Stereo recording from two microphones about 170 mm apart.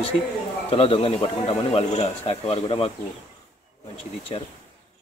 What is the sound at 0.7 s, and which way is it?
Speech, 35° left (ahead or behind).